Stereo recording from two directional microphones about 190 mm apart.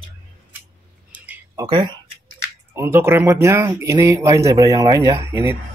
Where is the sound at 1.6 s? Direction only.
25° right (ahead or behind).